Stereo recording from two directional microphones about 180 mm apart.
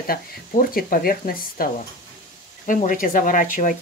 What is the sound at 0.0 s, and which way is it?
Speech, 55° left (ahead or behind).